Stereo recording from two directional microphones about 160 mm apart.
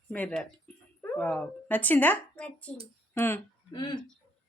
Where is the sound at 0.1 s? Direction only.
10° left (ahead or behind).